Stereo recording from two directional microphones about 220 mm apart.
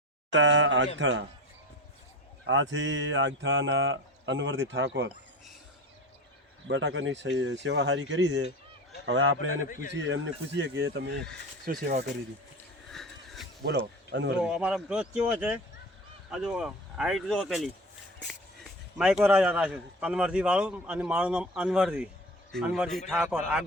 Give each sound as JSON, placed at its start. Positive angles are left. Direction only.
{"t": 0.3, "sound": "speech", "side_deg": -55}
{"t": 2.5, "sound": "speech", "side_deg": -60}
{"t": 6.7, "sound": "speech", "side_deg": -55}
{"t": 9.6, "sound": "a man's voice", "side_deg": 40}
{"t": 9.9, "sound": "speech", "side_deg": -55}
{"t": 12.9, "sound": "a sound", "side_deg": 0}
{"t": 13.7, "sound": "speech", "side_deg": -50}
{"t": 14.4, "sound": "speech", "side_deg": -5}